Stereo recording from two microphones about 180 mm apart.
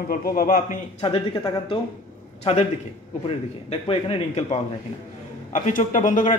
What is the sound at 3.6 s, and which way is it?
A man's voice, 30° left (ahead or behind).